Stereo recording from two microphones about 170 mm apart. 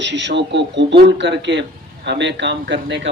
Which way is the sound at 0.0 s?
90° right.